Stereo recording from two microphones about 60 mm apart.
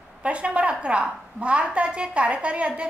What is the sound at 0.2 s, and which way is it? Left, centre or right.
A woman's voice, centre.